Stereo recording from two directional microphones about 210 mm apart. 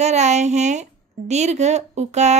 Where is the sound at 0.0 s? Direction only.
35° right (ahead or behind).